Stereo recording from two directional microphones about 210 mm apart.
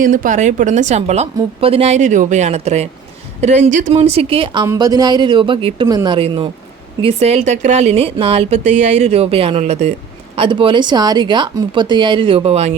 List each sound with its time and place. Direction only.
0.0 s speech: 40° right (ahead or behind)